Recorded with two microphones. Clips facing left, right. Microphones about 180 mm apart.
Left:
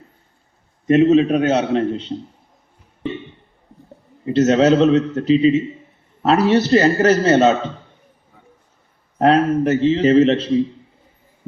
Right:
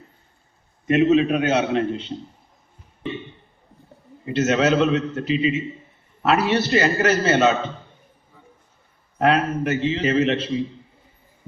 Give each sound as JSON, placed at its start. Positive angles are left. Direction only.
{"t": 0.9, "sound": "a man's voice", "side_deg": 35}
{"t": 4.3, "sound": "a man's voice", "side_deg": 35}
{"t": 9.1, "sound": "a man's voice", "side_deg": 35}